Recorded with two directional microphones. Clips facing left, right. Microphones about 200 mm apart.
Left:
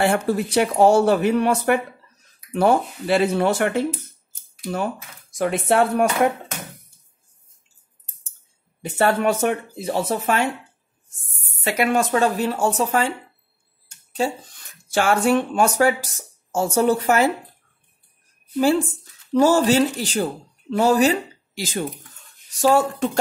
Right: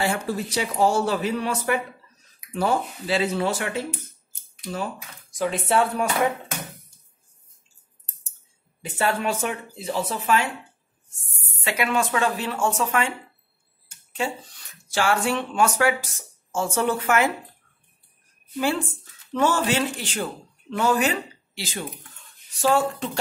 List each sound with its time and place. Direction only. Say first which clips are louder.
0.0 s speech: left 6 dB; 60° left (ahead or behind)
8.8 s speech: left 6 dB; 60° left (ahead or behind)
9.8 s speech: left 3 dB; 45° left (ahead or behind)
11.6 s speech: left 4 dB; 40° left (ahead or behind)
14.1 s speech: left 5 dB; 40° left (ahead or behind)
19.3 s speech: left 6 dB; 35° left (ahead or behind)